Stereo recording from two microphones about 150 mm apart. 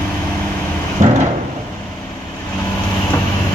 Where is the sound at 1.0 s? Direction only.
55° right (ahead or behind).